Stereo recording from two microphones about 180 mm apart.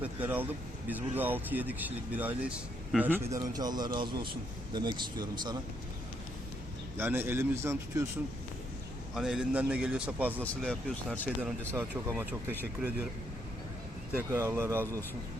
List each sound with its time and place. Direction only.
0.0 s speech: 10° right (ahead or behind)
3.3 s speech: 20° right (ahead or behind)
6.9 s speech: 10° right (ahead or behind)
9.1 s speech: centre (ahead or behind)
10.4 s speech: 5° left (ahead or behind)
11.7 s speech: 15° right (ahead or behind)
14.2 s speech: 15° right (ahead or behind)